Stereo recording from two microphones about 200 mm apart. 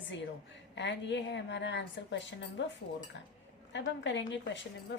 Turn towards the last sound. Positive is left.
turn(degrees=65)  # may be behind; listen again after turning